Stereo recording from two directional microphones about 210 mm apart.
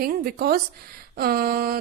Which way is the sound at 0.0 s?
45° right (ahead or behind).